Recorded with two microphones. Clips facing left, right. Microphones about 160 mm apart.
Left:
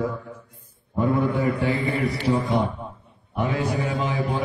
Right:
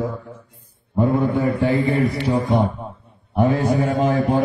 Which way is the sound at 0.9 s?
35° right (ahead or behind).